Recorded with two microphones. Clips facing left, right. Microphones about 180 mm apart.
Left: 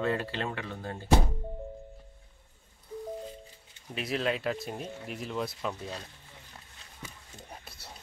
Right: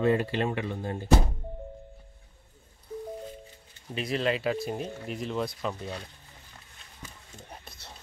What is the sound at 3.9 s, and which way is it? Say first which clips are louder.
Speech: right 2 dB; centre (ahead or behind).